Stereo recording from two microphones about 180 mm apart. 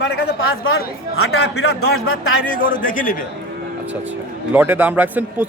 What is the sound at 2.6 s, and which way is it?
Speech, 50° left (ahead or behind).